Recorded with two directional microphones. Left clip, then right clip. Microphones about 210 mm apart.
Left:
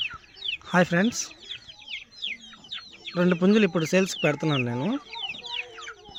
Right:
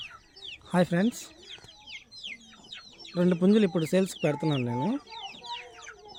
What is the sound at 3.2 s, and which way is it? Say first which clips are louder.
Speech: left 3 dB; centre (ahead or behind).